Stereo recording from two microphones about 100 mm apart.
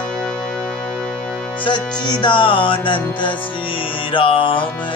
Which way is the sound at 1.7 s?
50° left (ahead or behind).